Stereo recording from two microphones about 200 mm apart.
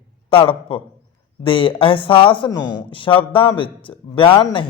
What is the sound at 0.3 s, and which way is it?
Speech, 25° left (ahead or behind).